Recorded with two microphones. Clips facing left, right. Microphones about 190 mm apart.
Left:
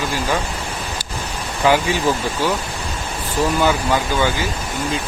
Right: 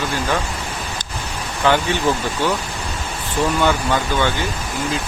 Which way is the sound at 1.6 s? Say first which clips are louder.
Left 1 dB; 10° left (ahead or behind).